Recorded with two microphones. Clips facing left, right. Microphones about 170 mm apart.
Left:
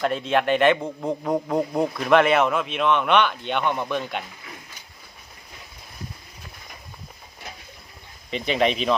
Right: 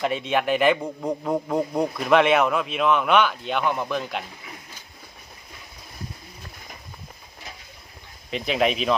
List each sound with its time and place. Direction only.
0.0 s a man's voice: centre (ahead or behind)
8.3 s a man's voice: centre (ahead or behind)